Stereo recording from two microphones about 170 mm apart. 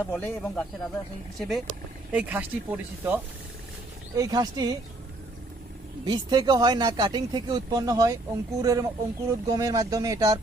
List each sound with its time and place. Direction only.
0.0 s speech: 10° left (ahead or behind); by 3.2 s 10° right (ahead or behind)
4.1 s speech: 20° right (ahead or behind)
6.1 s speech: 25° right (ahead or behind)